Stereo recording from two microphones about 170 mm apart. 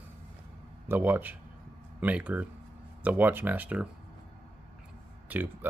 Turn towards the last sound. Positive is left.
turn(degrees=-10)  # may be behind; listen again after turning